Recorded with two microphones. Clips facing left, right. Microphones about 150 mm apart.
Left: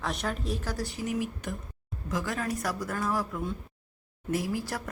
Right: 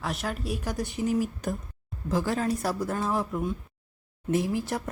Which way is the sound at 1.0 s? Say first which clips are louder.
Right 6 dB; 40° right (ahead or behind).